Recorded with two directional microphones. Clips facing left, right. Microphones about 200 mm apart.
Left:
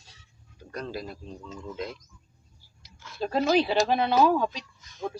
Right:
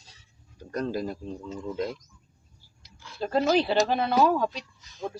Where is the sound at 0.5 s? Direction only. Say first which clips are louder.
Right 6 dB; 45° right (ahead or behind).